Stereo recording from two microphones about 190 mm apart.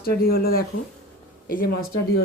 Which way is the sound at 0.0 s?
50° left (ahead or behind).